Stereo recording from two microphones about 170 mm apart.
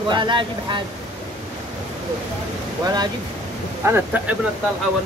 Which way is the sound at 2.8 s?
25° right (ahead or behind).